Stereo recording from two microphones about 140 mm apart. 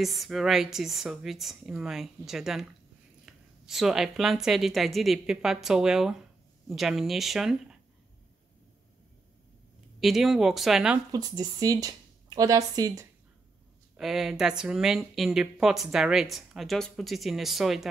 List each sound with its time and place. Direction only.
0.0 s speech: centre (ahead or behind)
9.9 s speech: centre (ahead or behind)
11.1 s speech: 30° right (ahead or behind)
13.9 s speech: centre (ahead or behind)